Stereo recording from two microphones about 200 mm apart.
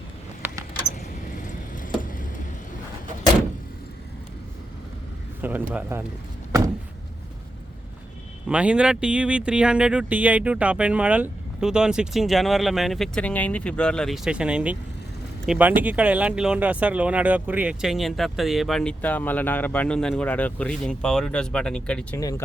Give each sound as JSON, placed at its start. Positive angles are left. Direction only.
{"t": 1.4, "sound": "a sound", "side_deg": 40}
{"t": 5.4, "sound": "speech", "side_deg": -10}
{"t": 8.4, "sound": "speech", "side_deg": -5}